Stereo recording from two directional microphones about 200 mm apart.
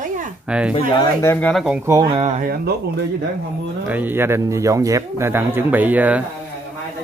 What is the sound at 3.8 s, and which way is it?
Speech, 10° right (ahead or behind).